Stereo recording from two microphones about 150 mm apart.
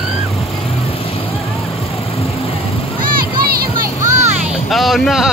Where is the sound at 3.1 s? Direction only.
75° right (ahead or behind); by 4.4 s 50° right (ahead or behind).